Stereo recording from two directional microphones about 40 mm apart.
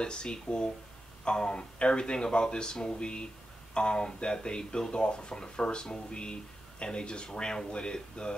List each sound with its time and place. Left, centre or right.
0.0 s speech: left